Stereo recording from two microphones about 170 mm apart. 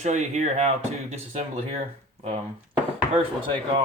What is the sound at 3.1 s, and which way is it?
Speech, 30° right (ahead or behind).